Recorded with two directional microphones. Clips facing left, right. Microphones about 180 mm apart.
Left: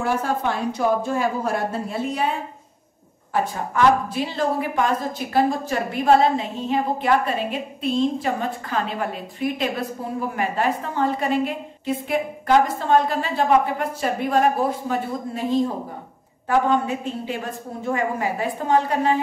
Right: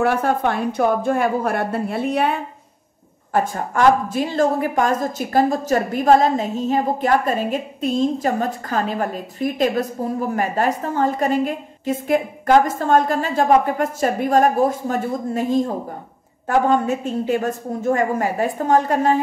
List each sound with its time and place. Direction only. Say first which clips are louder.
0.0 s a woman's voice: right 4 dB; 60° right (ahead or behind)
3.3 s a woman's voice: right 2 dB; 45° right (ahead or behind)